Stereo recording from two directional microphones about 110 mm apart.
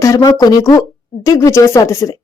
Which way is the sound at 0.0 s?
30° left (ahead or behind).